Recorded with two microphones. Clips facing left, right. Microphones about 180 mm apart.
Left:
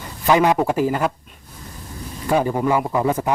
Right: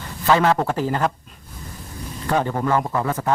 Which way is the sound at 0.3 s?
15° left (ahead or behind).